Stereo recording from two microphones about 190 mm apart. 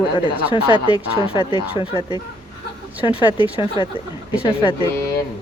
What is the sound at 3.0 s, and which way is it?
Speech, 25° left (ahead or behind).